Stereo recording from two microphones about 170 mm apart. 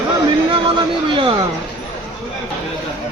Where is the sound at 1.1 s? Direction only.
30° right (ahead or behind).